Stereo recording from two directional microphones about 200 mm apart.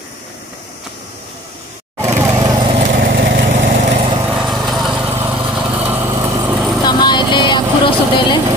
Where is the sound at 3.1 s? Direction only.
60° right (ahead or behind).